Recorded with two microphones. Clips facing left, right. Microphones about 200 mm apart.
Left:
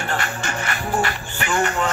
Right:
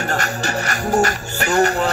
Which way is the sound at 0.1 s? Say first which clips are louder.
Right 4 dB; 40° right (ahead or behind).